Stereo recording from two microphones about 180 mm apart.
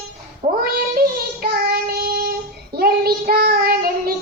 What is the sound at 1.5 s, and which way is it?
Child singing, 55° right (ahead or behind).